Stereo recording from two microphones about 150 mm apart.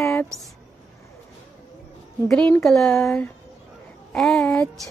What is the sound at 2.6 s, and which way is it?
Speech, 5° left (ahead or behind).